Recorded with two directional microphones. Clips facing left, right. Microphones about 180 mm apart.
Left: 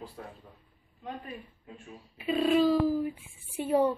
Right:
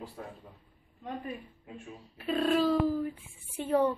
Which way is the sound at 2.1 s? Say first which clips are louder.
Left 2 dB; 5° left (ahead or behind).